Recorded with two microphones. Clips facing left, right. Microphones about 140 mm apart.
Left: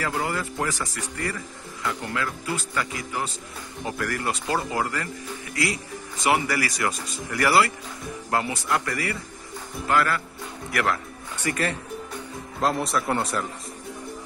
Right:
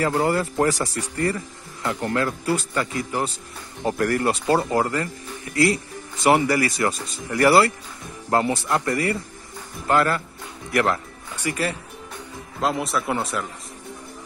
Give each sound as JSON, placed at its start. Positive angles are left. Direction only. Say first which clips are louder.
{"t": 0.0, "sound": "speech", "louder": "right 6 dB", "side_deg": -30}
{"t": 6.4, "sound": "speech", "louder": "right 5 dB", "side_deg": -25}
{"t": 11.3, "sound": "speech", "louder": "right 1 dB", "side_deg": -10}